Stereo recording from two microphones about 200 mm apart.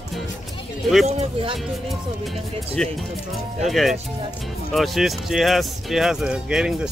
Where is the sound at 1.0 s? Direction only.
30° right (ahead or behind).